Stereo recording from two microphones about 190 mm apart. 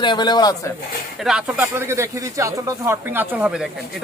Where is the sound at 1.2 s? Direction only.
5° right (ahead or behind).